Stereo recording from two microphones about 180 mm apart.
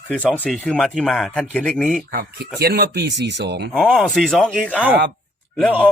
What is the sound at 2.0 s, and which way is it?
Speech, 55° right (ahead or behind).